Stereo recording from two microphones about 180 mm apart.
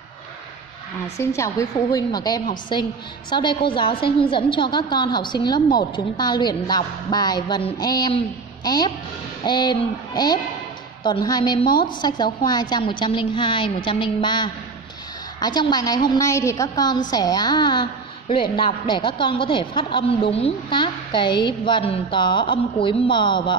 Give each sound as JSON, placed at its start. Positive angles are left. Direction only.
{"t": 1.1, "sound": "a woman's voice", "side_deg": 15}